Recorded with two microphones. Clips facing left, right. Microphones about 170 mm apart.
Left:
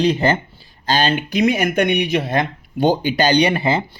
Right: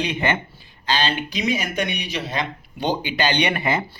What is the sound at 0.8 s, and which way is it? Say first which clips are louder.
Speech: left 5 dB; 45° left (ahead or behind).